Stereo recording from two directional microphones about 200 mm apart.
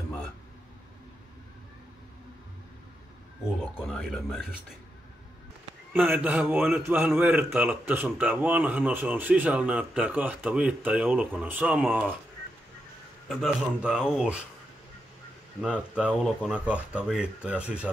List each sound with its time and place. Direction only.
3.4 s speech: centre (ahead or behind)
5.9 s a man's voice: 10° right (ahead or behind)
13.3 s speech: centre (ahead or behind)
15.6 s speech: 5° right (ahead or behind)